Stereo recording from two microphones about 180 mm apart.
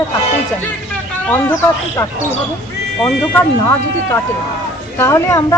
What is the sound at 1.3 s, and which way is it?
Speech, 15° left (ahead or behind).